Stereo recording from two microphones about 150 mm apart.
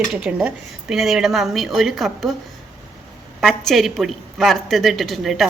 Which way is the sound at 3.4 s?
Centre (ahead or behind).